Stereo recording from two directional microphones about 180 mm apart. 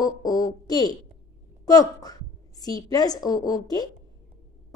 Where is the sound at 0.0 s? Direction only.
20° left (ahead or behind).